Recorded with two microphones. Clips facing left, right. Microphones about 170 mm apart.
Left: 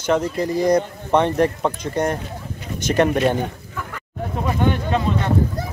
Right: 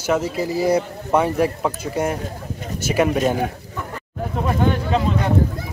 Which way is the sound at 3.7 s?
35° right (ahead or behind).